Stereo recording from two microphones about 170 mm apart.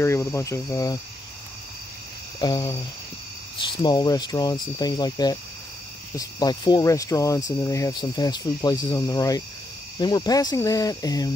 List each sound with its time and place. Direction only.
0.0 s cricket: 15° left (ahead or behind)
2.4 s speech: 25° left (ahead or behind)
3.8 s speech: 25° left (ahead or behind)